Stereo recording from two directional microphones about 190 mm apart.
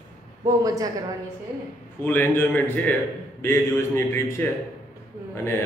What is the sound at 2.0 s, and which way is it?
A man's voice, 10° left (ahead or behind).